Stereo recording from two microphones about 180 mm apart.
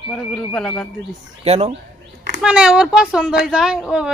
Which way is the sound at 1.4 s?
35° right (ahead or behind).